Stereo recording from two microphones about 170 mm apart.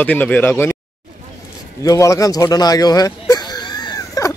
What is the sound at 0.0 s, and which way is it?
Speech, 10° left (ahead or behind).